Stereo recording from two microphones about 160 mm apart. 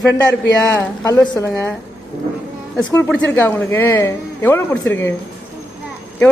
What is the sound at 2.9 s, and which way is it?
Speech, 10° left (ahead or behind).